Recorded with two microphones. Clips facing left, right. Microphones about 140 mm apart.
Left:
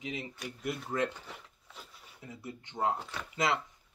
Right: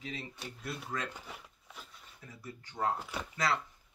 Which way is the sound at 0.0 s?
15° left (ahead or behind).